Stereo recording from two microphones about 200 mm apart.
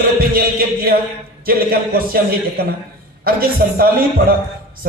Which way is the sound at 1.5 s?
50° right (ahead or behind).